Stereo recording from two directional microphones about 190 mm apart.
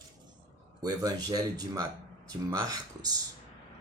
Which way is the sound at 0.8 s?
20° right (ahead or behind).